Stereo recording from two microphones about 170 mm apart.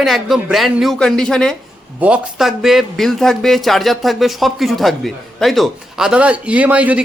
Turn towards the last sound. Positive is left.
turn(degrees=-10)  # may be behind; listen again after turning